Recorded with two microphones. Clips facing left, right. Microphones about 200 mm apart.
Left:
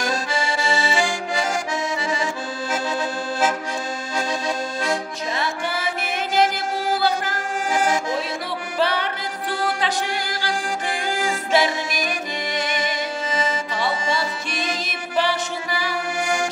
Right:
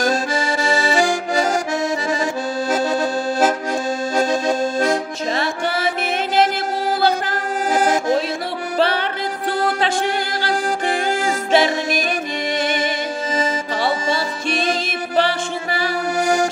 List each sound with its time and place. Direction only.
0.0 s accordion: 40° right (ahead or behind)
7.7 s accordion: 40° right (ahead or behind)
8.7 s music: 30° right (ahead or behind)
11.5 s music: 25° right (ahead or behind)